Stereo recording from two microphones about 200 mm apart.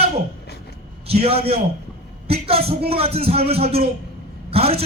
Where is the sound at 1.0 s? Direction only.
30° right (ahead or behind).